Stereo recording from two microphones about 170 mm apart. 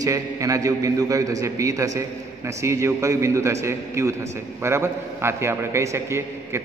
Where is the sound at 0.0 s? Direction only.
20° right (ahead or behind).